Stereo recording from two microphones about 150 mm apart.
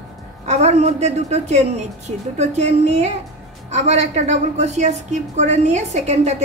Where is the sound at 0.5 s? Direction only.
50° right (ahead or behind).